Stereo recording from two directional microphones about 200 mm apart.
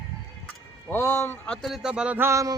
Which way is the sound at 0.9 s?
15° left (ahead or behind).